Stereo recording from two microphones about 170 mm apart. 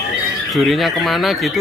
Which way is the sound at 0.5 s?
Centre (ahead or behind).